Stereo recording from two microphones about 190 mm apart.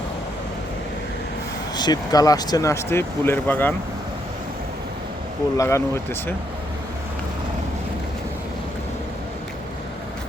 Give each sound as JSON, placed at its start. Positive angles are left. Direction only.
{"t": 1.7, "sound": "speech", "side_deg": 20}
{"t": 5.5, "sound": "speech", "side_deg": 15}